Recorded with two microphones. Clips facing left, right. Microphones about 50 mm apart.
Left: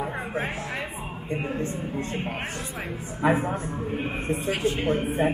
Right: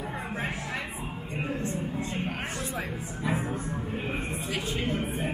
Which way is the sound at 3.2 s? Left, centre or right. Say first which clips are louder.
Left 9 dB; left.